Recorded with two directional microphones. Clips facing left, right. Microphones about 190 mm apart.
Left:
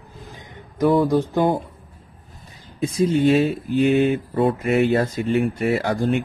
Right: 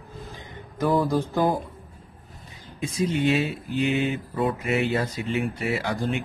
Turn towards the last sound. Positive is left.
turn(degrees=50)  # may be behind; listen again after turning